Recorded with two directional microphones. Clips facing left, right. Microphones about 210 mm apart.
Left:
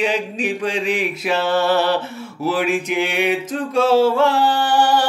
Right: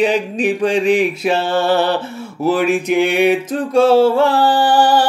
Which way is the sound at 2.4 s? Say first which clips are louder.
Right 5 dB; 50° right (ahead or behind).